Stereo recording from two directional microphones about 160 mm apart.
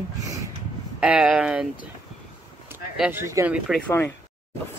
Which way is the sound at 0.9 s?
5° right (ahead or behind).